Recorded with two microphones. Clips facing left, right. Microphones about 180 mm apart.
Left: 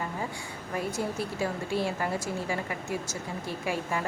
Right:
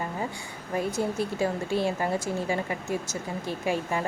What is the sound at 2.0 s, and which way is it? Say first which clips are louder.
Speech: right 3 dB; 20° right (ahead or behind).